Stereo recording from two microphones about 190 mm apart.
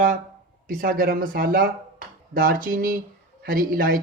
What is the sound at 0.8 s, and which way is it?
Speech, 45° right (ahead or behind).